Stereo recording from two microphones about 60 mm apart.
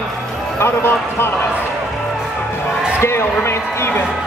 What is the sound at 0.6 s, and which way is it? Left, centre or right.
Speech, left.